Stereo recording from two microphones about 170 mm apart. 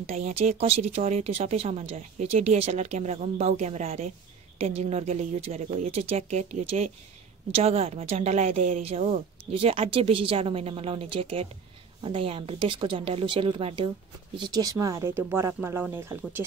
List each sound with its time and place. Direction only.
0.0 s speech: 40° right (ahead or behind)
14.4 s speech: 20° right (ahead or behind)